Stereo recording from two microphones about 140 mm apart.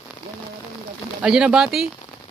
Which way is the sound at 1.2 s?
5° right (ahead or behind).